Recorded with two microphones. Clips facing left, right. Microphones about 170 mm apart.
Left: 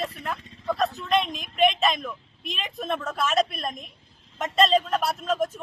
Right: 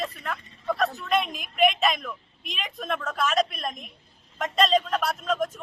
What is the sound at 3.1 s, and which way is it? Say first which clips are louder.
Speech: even; centre (ahead or behind).